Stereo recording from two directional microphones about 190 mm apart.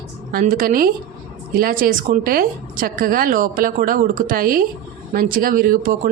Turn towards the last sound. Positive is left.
turn(degrees=-45)  # may be behind; listen again after turning